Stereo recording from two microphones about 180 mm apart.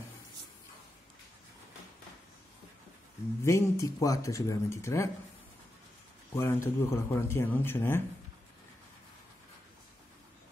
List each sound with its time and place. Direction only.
3.4 s speech: 15° left (ahead or behind)
6.3 s speech: 15° left (ahead or behind)